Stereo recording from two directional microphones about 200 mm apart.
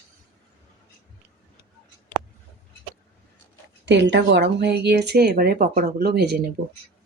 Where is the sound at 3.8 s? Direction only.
60° right (ahead or behind).